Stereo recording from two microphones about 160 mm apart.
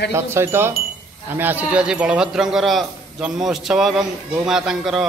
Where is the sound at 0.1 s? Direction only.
15° right (ahead or behind).